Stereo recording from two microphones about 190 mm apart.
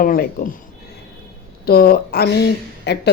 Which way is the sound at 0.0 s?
50° left (ahead or behind).